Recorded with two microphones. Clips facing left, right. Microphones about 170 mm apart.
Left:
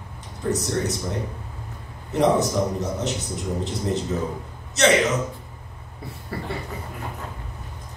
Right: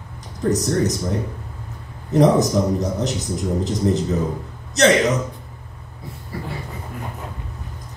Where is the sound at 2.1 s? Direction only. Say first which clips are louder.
Right 4 dB; 40° right (ahead or behind).